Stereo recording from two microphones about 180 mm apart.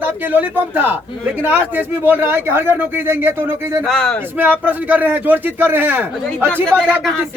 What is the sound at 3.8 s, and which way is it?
Speech, 5° left (ahead or behind).